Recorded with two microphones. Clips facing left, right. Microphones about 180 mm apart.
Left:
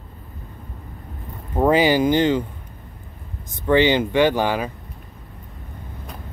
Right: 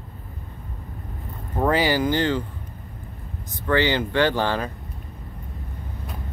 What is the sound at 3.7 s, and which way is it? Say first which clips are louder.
Speech: left 5 dB; 20° left (ahead or behind).